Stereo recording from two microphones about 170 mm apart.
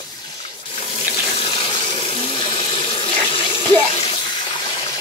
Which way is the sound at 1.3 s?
30° left (ahead or behind).